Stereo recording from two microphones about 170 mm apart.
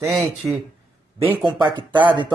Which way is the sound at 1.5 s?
25° right (ahead or behind).